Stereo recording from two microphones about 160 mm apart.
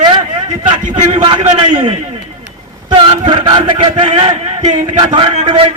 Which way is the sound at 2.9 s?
35° right (ahead or behind).